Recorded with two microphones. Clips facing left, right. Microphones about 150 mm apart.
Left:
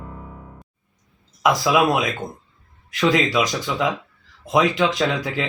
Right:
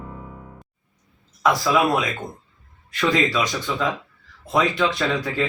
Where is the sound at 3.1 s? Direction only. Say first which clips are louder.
Left 1 dB; 15° left (ahead or behind).